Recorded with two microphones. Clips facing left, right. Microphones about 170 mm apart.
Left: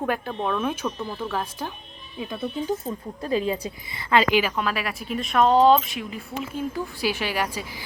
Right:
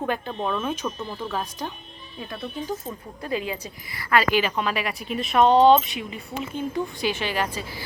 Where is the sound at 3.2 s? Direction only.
30° left (ahead or behind); by 4.5 s 15° left (ahead or behind).